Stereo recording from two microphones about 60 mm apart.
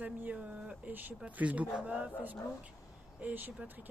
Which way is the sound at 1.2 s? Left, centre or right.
Right.